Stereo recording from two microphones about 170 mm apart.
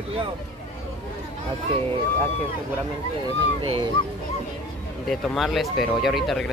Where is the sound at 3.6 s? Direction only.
35° right (ahead or behind).